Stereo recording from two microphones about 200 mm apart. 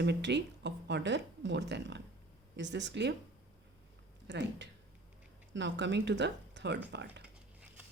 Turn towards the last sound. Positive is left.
turn(degrees=-60)  # may be behind; listen again after turning